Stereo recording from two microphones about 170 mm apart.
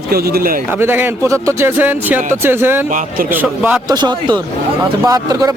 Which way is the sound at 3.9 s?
25° right (ahead or behind).